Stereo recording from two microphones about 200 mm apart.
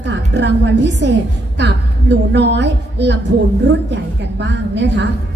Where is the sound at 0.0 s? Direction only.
60° right (ahead or behind).